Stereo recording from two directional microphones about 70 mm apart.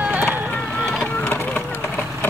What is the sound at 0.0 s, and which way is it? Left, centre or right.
Run, right.